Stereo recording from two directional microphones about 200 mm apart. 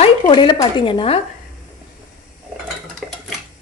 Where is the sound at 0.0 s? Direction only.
25° left (ahead or behind).